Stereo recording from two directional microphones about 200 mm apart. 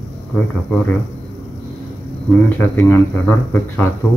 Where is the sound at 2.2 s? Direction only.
10° left (ahead or behind).